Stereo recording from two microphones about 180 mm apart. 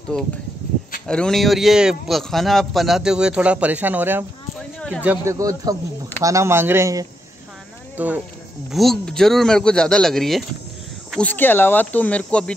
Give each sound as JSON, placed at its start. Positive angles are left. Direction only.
{"t": 0.1, "sound": "a man's voice", "side_deg": 5}
{"t": 8.7, "sound": "a man's voice", "side_deg": 0}